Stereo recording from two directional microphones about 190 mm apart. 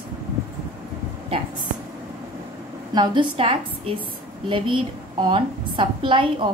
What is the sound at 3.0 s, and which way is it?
A woman's voice, 25° right (ahead or behind).